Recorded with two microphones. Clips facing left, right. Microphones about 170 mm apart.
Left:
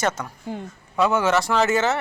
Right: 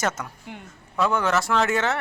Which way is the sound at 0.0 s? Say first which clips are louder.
Left 3 dB; 5° right (ahead or behind).